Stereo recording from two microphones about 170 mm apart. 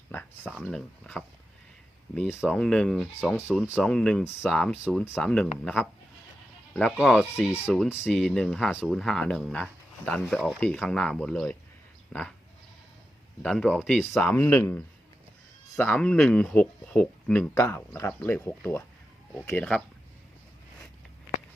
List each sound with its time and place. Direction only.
0.1 s a sound: 10° left (ahead or behind)
0.6 s speech: 5° left (ahead or behind)
2.5 s speech: 5° left (ahead or behind)
13.4 s speech: 5° left (ahead or behind)